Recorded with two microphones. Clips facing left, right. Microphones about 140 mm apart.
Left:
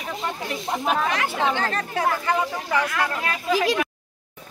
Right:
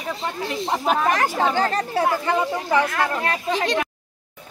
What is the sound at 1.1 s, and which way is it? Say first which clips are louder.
Speech: right 3 dB; 40° right (ahead or behind).